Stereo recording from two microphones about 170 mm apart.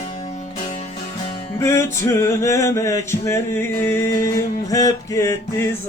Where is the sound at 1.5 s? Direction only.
15° left (ahead or behind).